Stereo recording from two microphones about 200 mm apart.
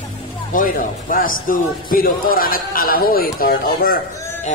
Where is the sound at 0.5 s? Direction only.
45° left (ahead or behind).